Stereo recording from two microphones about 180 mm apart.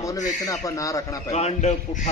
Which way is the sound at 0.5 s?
20° left (ahead or behind).